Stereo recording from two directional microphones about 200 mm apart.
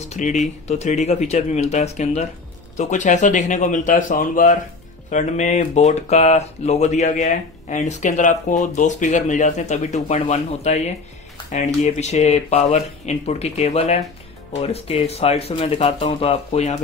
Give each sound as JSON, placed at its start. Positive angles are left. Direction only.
{"t": 0.1, "sound": "speech", "side_deg": 35}